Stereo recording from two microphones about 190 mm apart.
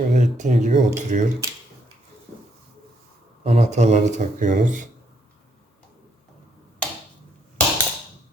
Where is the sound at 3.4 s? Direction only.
35° right (ahead or behind).